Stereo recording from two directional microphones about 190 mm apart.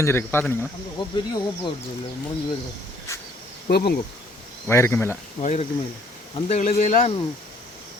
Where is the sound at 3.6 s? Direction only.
55° left (ahead or behind).